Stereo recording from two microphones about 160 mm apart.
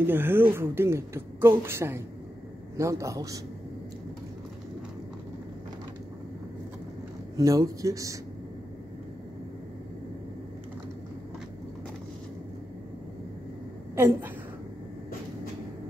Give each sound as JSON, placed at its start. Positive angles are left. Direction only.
{"t": 0.0, "sound": "speech", "side_deg": -15}
{"t": 7.3, "sound": "speech", "side_deg": -20}
{"t": 13.9, "sound": "speech", "side_deg": -15}